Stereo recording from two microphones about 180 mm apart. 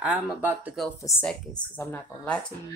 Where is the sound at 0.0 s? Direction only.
5° right (ahead or behind).